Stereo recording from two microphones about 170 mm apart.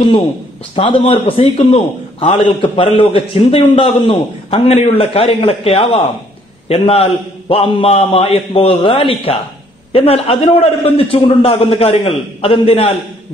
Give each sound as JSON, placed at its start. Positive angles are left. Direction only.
{"t": 0.7, "sound": "a man's voice", "side_deg": 35}